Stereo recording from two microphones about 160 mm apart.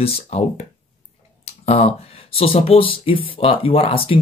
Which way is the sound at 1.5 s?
40° left (ahead or behind).